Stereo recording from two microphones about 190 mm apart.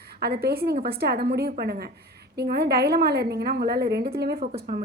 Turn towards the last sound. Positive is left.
turn(degrees=-50)  # may be behind; listen again after turning